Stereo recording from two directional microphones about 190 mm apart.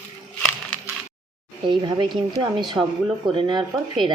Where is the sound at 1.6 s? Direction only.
25° right (ahead or behind).